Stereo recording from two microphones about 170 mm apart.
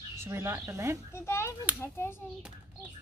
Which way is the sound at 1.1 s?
15° left (ahead or behind).